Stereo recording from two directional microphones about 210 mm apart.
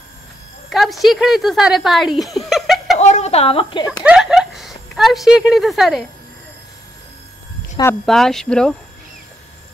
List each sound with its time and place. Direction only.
0.7 s speech: centre (ahead or behind)
3.0 s a woman's voice: 35° left (ahead or behind)
4.0 s speech: 5° right (ahead or behind)
8.0 s speech: centre (ahead or behind)